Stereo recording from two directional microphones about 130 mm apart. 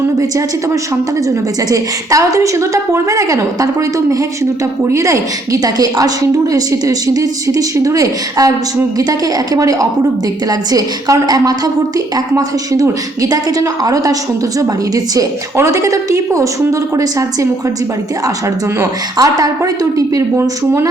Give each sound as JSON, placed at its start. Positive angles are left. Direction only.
{"t": 0.2, "sound": "a woman's voice", "side_deg": -25}
{"t": 19.1, "sound": "a woman's voice", "side_deg": -25}